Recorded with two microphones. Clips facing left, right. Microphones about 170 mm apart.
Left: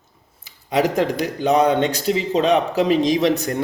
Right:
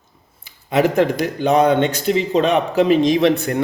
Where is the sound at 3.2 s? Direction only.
55° right (ahead or behind).